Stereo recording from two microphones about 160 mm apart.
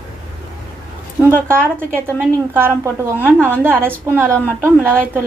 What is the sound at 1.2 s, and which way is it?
A woman's voice, 15° right (ahead or behind).